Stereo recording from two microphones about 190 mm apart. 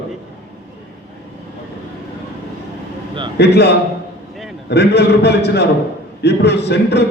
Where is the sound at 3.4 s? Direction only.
60° left (ahead or behind).